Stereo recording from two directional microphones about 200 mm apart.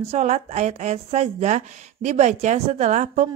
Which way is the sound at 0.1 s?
35° right (ahead or behind).